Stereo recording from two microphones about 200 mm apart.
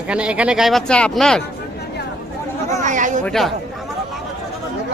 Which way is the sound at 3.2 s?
Centre (ahead or behind).